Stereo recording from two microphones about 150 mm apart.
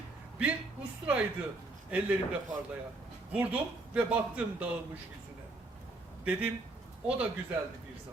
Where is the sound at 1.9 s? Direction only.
10° right (ahead or behind).